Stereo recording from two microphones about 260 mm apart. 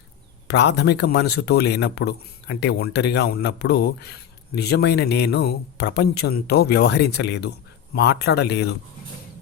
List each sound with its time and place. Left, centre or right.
0.4 s a man's voice: left